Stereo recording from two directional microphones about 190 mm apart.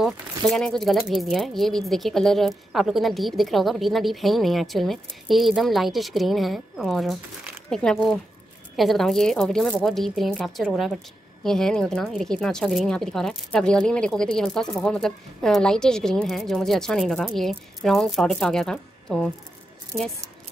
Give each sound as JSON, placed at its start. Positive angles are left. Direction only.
{"t": 0.0, "sound": "speech", "side_deg": 0}